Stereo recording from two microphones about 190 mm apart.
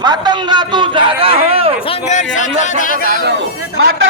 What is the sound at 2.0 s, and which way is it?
Speech, 40° left (ahead or behind).